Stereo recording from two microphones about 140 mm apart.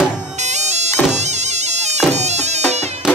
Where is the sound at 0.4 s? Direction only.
55° right (ahead or behind).